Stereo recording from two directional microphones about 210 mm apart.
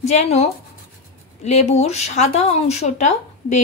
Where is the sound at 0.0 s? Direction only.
30° left (ahead or behind).